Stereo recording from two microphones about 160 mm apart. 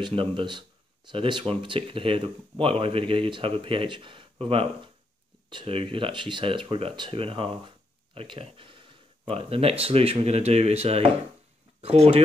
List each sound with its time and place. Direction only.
0.0 s speech: 30° right (ahead or behind)